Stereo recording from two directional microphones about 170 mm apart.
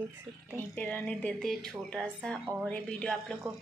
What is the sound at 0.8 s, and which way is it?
A woman's voice, 10° left (ahead or behind).